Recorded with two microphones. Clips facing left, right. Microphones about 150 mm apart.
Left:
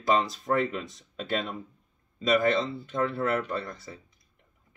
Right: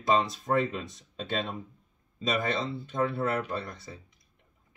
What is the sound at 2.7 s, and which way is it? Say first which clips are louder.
Speech: even; 20° right (ahead or behind).